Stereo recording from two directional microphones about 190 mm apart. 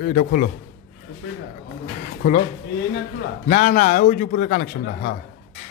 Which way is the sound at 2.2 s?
40° left (ahead or behind).